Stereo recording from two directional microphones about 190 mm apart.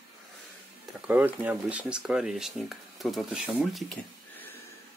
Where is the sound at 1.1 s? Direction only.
10° right (ahead or behind).